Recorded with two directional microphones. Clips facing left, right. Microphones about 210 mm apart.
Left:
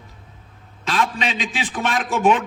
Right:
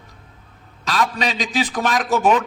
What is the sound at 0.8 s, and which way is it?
A man's voice, 40° right (ahead or behind).